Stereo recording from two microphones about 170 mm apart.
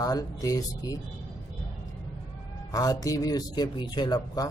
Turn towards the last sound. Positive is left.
turn(degrees=25)  # may be behind; listen again after turning